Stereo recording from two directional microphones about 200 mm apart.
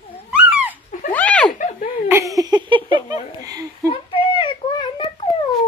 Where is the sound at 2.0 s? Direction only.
15° right (ahead or behind).